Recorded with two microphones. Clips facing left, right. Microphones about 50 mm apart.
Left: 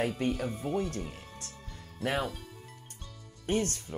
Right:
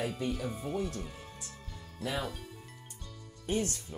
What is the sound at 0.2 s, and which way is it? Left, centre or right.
Speech, left.